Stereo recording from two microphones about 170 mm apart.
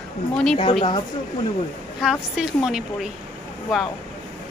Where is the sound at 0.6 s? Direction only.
30° left (ahead or behind).